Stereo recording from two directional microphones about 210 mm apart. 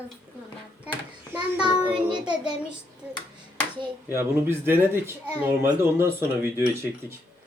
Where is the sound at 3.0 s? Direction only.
5° right (ahead or behind).